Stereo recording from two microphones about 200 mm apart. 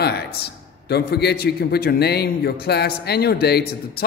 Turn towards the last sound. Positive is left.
turn(degrees=50)  # may be behind; listen again after turning